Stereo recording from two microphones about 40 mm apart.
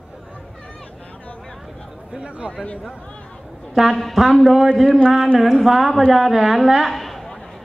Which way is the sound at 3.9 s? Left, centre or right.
Centre.